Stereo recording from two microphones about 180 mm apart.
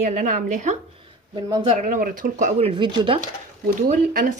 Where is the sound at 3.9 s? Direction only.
50° right (ahead or behind).